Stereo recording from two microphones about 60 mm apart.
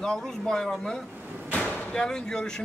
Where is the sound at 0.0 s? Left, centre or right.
Centre.